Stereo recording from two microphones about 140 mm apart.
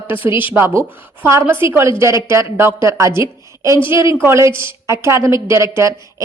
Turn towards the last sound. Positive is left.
turn(degrees=-20)  # may be behind; listen again after turning